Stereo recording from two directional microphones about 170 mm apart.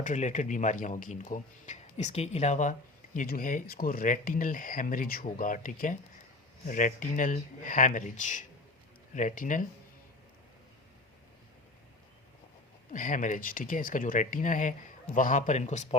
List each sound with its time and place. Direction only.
0.0 s speech: 45° left (ahead or behind)
3.2 s speech: 55° left (ahead or behind)
12.9 s speech: 50° left (ahead or behind)